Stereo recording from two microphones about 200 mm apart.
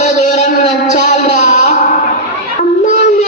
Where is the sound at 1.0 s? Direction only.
35° left (ahead or behind).